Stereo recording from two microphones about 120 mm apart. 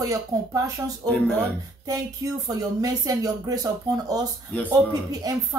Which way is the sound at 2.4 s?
30° right (ahead or behind).